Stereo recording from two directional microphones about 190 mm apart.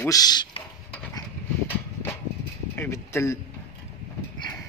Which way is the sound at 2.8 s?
15° left (ahead or behind).